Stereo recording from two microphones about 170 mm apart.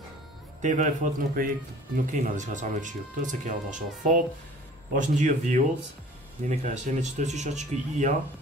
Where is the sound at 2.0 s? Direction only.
50° right (ahead or behind).